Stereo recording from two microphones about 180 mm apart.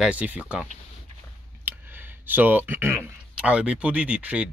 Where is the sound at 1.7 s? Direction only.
10° right (ahead or behind).